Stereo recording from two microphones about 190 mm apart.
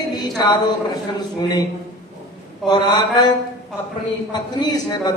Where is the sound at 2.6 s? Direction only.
20° left (ahead or behind).